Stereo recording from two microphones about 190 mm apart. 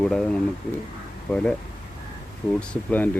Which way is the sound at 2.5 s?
10° left (ahead or behind).